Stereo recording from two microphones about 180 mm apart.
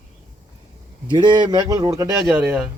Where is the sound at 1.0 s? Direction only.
25° right (ahead or behind).